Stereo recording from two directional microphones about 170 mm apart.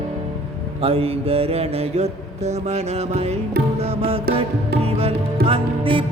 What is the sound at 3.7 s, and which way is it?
Music, 35° right (ahead or behind).